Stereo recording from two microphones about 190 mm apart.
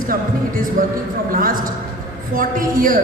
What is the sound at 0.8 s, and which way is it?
Music, 45° right (ahead or behind).